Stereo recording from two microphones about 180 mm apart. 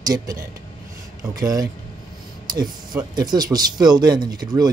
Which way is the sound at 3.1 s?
20° right (ahead or behind).